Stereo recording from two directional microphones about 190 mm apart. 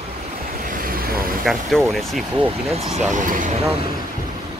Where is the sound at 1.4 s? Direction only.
Centre (ahead or behind).